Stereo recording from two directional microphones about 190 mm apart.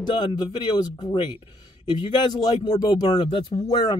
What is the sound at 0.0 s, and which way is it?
Speech, 25° left (ahead or behind).